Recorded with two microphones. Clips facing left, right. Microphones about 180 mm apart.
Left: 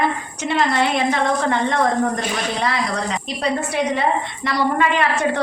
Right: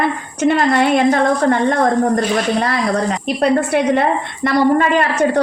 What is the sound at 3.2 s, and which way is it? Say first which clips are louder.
A woman's voice: right 10 dB; 60° right (ahead or behind).